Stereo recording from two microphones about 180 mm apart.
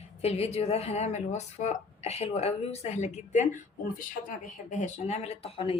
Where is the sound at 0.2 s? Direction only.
35° left (ahead or behind).